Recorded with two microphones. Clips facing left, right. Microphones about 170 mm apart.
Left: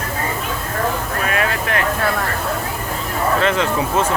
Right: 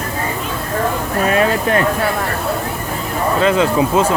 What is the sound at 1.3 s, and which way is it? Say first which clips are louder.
Speech: right 7 dB; 35° right (ahead or behind).